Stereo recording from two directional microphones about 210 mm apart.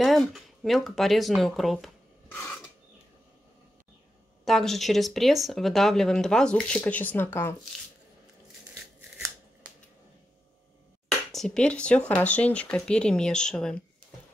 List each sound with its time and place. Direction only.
0.0 s speech: centre (ahead or behind)
4.5 s speech: centre (ahead or behind)
11.1 s a sound: centre (ahead or behind)
12.1 s speech: 5° left (ahead or behind)